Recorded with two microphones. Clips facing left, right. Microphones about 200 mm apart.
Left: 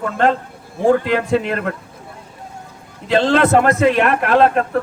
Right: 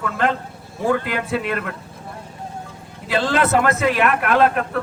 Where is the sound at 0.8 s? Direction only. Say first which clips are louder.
Left 6 dB; 30° left (ahead or behind).